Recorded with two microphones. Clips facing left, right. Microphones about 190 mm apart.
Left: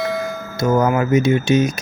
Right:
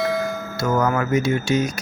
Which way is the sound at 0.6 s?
20° left (ahead or behind).